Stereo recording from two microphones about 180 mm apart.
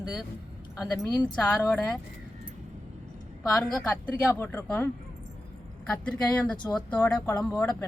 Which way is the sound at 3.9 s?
5° left (ahead or behind).